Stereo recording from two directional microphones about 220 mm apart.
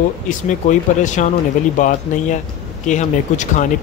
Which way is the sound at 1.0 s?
35° left (ahead or behind).